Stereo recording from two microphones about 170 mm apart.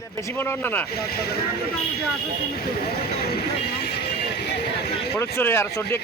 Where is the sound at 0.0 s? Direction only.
15° left (ahead or behind).